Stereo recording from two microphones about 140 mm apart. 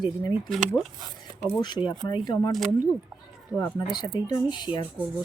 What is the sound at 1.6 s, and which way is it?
Speech, 30° left (ahead or behind).